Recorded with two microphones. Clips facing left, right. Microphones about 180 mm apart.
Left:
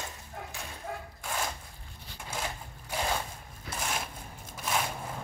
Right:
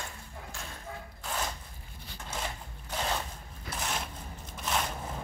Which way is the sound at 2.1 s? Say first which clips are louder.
Left 1 dB; 10° left (ahead or behind).